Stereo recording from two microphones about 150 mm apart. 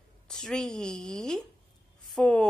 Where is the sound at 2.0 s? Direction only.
5° left (ahead or behind).